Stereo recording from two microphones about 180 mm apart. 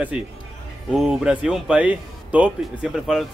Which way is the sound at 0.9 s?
5° right (ahead or behind).